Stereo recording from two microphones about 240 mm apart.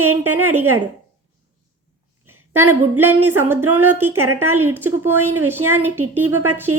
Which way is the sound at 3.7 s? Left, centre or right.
Right.